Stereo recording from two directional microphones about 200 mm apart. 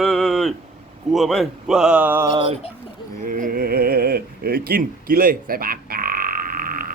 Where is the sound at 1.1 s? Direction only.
Centre (ahead or behind).